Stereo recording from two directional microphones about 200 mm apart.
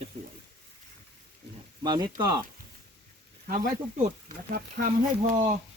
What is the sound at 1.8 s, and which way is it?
Speech, 20° right (ahead or behind).